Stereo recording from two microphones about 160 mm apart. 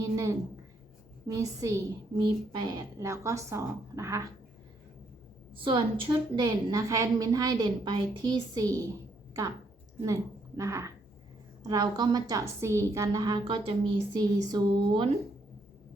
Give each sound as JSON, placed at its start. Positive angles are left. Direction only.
{"t": 0.0, "sound": "a sound", "side_deg": -20}
{"t": 1.3, "sound": "a woman's voice", "side_deg": -20}
{"t": 5.5, "sound": "a woman's voice", "side_deg": -30}
{"t": 10.6, "sound": "a woman's voice", "side_deg": -20}
{"t": 13.4, "sound": "speech", "side_deg": -35}